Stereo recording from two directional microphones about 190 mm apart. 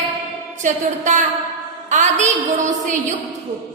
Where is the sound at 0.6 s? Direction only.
40° right (ahead or behind).